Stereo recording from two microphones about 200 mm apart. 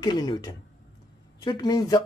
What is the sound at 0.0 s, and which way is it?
Speech, 20° left (ahead or behind).